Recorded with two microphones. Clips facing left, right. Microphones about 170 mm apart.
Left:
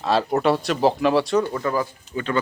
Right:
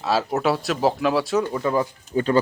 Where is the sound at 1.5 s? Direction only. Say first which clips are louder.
Right 2 dB; 20° right (ahead or behind).